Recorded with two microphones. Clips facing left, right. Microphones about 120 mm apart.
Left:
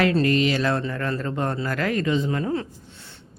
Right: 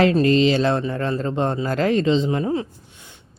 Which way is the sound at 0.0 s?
25° right (ahead or behind).